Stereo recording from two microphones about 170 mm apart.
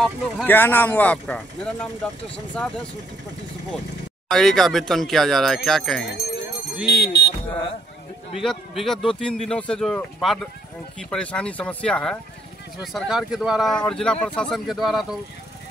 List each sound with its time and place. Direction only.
0.0 s speech: 10° left (ahead or behind)
4.3 s speech: centre (ahead or behind)
7.0 s speech: 75° left (ahead or behind)
8.4 s speech: centre (ahead or behind)